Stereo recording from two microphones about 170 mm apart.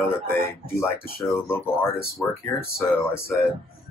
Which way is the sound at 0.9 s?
60° left (ahead or behind).